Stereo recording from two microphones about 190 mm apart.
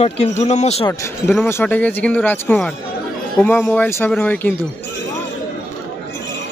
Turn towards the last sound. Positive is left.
turn(degrees=10)  # may be behind; listen again after turning